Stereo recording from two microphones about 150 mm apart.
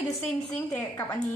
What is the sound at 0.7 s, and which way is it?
Speech, 20° left (ahead or behind).